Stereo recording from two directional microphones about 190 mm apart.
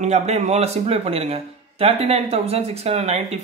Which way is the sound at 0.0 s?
35° right (ahead or behind).